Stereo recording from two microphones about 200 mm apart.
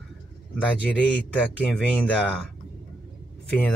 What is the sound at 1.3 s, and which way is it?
Speech, 5° left (ahead or behind).